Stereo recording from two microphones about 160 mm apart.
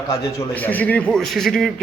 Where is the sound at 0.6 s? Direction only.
10° left (ahead or behind).